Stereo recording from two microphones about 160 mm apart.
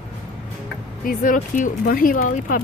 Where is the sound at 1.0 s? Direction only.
60° left (ahead or behind).